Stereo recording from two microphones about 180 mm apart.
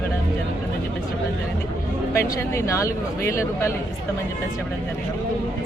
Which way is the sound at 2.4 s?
15° left (ahead or behind).